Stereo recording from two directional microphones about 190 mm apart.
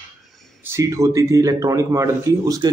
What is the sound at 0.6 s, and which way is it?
Speech, 15° right (ahead or behind).